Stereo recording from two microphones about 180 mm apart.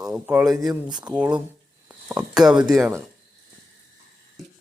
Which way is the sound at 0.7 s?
25° right (ahead or behind).